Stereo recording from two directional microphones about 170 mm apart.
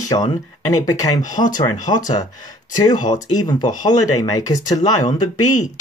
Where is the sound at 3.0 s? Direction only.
25° left (ahead or behind).